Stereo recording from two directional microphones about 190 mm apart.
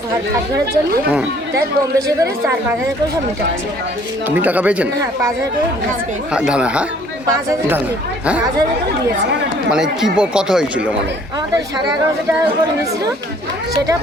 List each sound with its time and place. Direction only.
2.0 s a woman's voice: 15° right (ahead or behind)
4.3 s a woman's voice: 10° right (ahead or behind)
6.3 s speech: 5° right (ahead or behind)
9.7 s speech: 5° right (ahead or behind)